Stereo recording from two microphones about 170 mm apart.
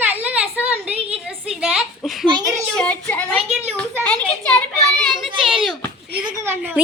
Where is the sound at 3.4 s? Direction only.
Centre (ahead or behind).